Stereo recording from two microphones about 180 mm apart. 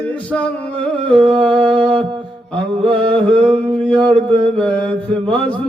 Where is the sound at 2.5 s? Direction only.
5° left (ahead or behind).